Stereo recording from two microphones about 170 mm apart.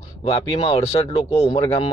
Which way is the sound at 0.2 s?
35° left (ahead or behind).